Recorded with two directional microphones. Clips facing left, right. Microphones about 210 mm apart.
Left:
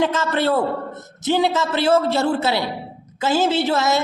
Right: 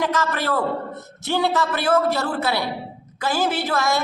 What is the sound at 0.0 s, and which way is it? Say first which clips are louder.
A woman's voice: left 4 dB; 25° left (ahead or behind).